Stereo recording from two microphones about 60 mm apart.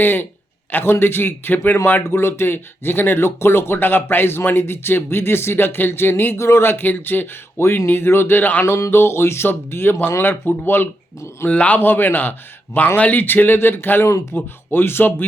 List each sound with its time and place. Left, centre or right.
0.0 s a man's voice: left
8.6 s a man's voice: left
11.4 s speech: left
11.8 s a man's voice: left